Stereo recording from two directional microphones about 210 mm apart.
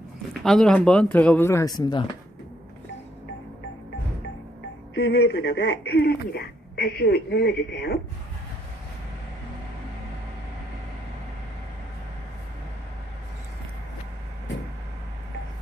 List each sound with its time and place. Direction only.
0.3 s speech: centre (ahead or behind)
4.9 s speech: 55° left (ahead or behind)